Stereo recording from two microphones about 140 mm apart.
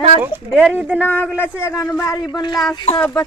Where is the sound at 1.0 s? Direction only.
15° left (ahead or behind).